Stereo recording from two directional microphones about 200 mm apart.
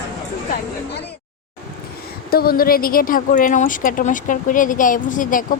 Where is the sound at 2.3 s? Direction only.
50° left (ahead or behind).